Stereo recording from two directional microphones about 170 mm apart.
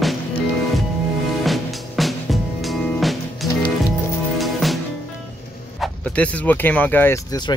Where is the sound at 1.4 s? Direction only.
Centre (ahead or behind).